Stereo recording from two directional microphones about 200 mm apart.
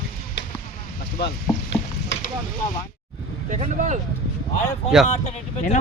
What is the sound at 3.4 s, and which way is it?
Vehicle, 35° right (ahead or behind).